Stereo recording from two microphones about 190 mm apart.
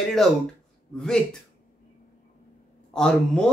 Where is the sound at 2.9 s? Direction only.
5° left (ahead or behind).